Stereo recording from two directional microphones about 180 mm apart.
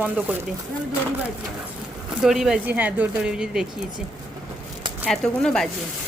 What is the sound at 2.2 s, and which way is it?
Speech, centre (ahead or behind).